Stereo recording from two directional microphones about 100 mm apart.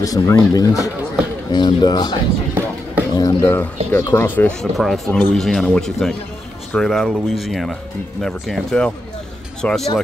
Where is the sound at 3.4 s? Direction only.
20° left (ahead or behind).